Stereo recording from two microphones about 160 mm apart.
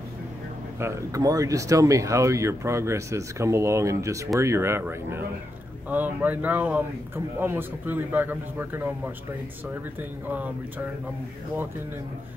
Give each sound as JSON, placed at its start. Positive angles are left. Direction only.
{"t": 0.7, "sound": "a man's voice", "side_deg": -20}